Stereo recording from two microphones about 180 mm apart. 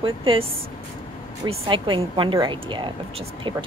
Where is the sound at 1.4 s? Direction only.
30° right (ahead or behind).